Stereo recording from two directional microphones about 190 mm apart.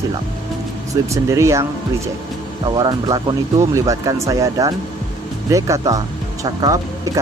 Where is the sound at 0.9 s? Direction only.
15° right (ahead or behind).